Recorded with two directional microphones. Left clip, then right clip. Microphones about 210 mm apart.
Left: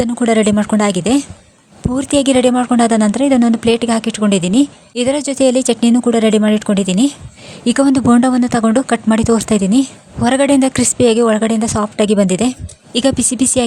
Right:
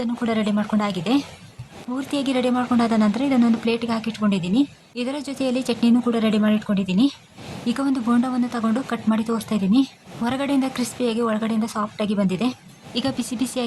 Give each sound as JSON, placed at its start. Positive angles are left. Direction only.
{"t": 0.0, "sound": "a woman's voice", "side_deg": 40}